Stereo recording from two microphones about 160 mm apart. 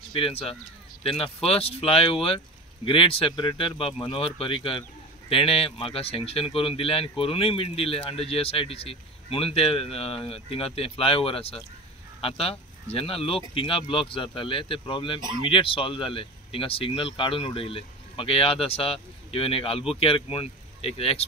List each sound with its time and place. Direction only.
0.1 s speech: 35° left (ahead or behind)